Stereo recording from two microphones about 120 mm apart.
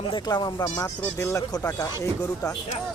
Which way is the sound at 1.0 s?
20° left (ahead or behind).